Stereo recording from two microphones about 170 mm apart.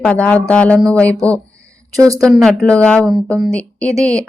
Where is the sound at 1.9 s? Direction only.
20° right (ahead or behind).